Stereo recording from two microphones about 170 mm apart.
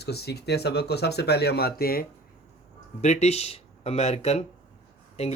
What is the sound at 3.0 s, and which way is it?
Speech, 40° left (ahead or behind).